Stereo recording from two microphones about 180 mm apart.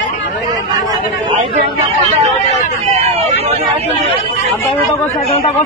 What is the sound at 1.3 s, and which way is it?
Speech, 30° right (ahead or behind).